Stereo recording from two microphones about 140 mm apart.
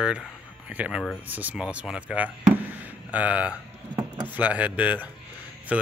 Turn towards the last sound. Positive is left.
turn(degrees=-10)  # may be behind; listen again after turning